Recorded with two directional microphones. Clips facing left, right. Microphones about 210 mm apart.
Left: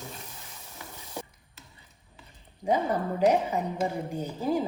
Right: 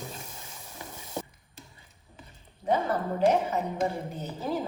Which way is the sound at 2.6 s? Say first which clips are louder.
Left 1 dB; 10° left (ahead or behind).